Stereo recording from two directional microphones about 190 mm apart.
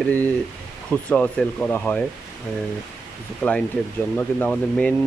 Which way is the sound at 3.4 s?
5° left (ahead or behind).